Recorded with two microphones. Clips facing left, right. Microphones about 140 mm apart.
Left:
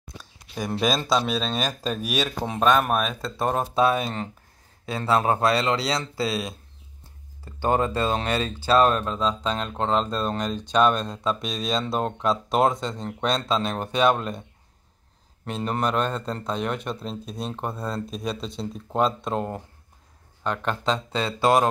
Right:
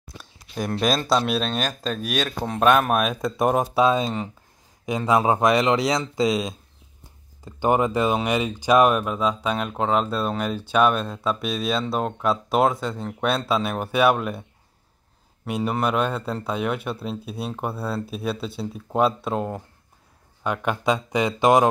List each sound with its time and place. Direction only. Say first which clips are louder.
0.7 s speech: right 2 dB; centre (ahead or behind)
2.8 s speech: right 2 dB; 5° right (ahead or behind)
3.2 s speech: right 4 dB; 15° right (ahead or behind)
15.4 s speech: right 2 dB; 10° right (ahead or behind)